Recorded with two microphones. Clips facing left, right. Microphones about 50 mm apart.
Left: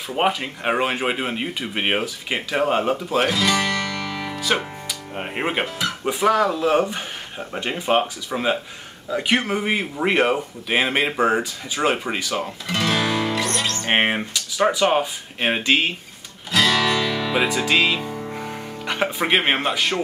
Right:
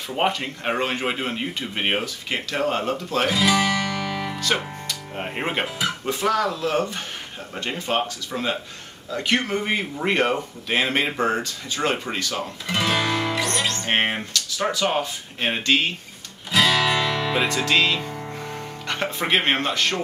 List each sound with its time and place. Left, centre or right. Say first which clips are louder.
0.1 s speech: left 2 dB; centre
3.3 s guitar: right 1 dB; centre
4.4 s speech: left 5 dB; centre
12.6 s guitar: even; centre
13.8 s speech: left 5 dB; centre
16.5 s music: even; centre
17.4 s speech: left 2 dB; centre